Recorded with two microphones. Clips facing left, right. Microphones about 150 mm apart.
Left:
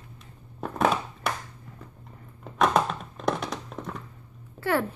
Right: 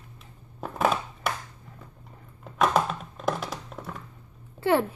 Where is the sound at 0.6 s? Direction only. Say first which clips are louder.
Left 1 dB; centre (ahead or behind).